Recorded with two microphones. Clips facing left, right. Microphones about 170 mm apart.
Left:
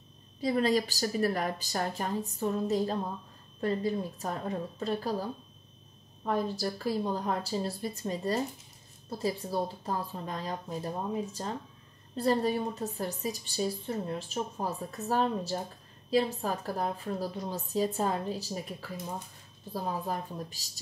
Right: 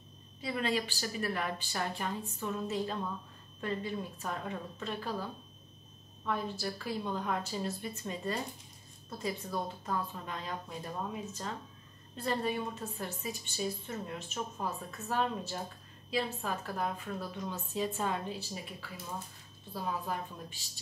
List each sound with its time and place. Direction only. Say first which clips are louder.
0.4 s a woman's voice: left 7 dB; 35° left (ahead or behind)